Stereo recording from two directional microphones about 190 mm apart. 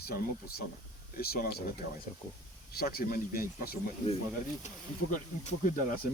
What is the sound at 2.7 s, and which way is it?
Speech, 55° left (ahead or behind).